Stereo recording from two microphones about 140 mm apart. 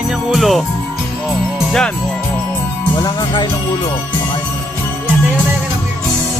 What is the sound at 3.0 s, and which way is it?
Speech, 30° left (ahead or behind).